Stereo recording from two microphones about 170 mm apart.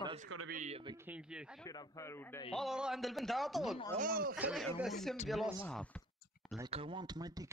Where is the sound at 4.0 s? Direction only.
60° right (ahead or behind).